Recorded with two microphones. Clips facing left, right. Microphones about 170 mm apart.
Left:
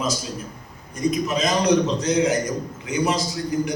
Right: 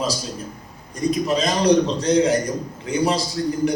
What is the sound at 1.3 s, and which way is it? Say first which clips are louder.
A man's voice: right 3 dB; 35° right (ahead or behind).